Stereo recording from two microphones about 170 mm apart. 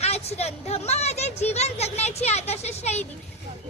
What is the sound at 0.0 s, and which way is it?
Speech, 40° left (ahead or behind).